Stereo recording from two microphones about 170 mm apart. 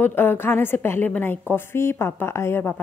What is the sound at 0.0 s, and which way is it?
A woman's voice, 10° left (ahead or behind).